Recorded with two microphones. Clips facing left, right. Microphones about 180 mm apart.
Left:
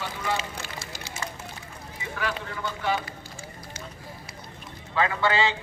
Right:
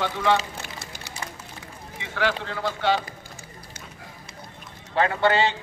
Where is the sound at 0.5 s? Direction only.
60° right (ahead or behind).